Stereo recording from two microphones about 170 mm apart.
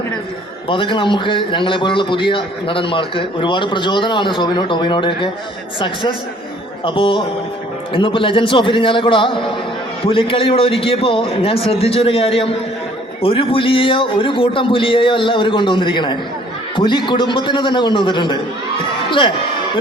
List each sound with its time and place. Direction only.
0.7 s a man's voice: 30° left (ahead or behind)